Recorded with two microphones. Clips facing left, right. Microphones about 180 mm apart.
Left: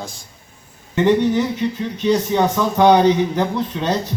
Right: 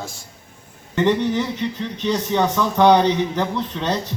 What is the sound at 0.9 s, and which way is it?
A man's voice, 10° left (ahead or behind).